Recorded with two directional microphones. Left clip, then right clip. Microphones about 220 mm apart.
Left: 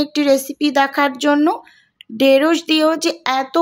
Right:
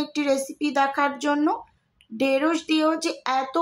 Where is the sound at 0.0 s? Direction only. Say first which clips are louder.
Left 8 dB; 35° left (ahead or behind).